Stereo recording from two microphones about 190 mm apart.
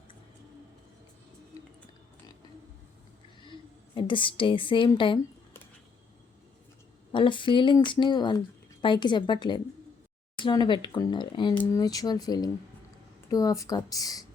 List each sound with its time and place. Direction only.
3.9 s speech: 25° left (ahead or behind)
7.1 s speech: 25° left (ahead or behind)